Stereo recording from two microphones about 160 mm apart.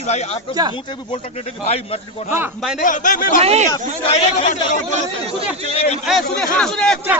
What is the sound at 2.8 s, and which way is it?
Speech, 55° left (ahead or behind).